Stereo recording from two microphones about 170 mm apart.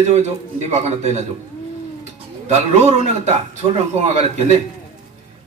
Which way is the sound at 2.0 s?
40° right (ahead or behind).